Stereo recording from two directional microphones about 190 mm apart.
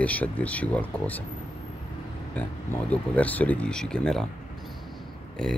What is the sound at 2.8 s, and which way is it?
Speech, 10° left (ahead or behind).